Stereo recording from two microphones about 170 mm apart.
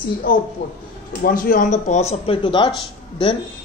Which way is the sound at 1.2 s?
55° left (ahead or behind).